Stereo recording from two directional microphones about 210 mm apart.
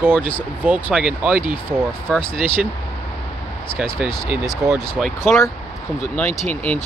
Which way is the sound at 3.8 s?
Centre (ahead or behind).